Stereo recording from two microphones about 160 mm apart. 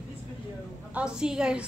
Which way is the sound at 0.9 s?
5° right (ahead or behind).